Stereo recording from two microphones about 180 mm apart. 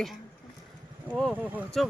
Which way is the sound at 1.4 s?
10° right (ahead or behind).